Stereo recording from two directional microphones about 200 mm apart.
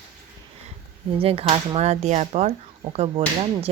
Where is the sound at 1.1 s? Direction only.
30° right (ahead or behind).